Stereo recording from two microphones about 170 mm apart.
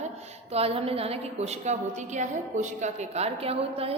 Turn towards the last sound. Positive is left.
turn(degrees=-35)  # may be behind; listen again after turning